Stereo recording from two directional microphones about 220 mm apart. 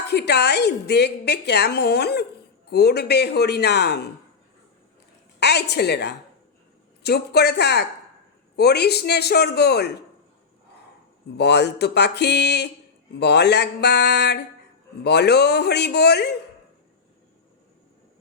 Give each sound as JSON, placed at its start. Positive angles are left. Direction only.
{"t": 0.1, "sound": "a woman's voice", "side_deg": 50}
{"t": 5.4, "sound": "a woman's voice", "side_deg": 50}
{"t": 11.3, "sound": "a woman's voice", "side_deg": 50}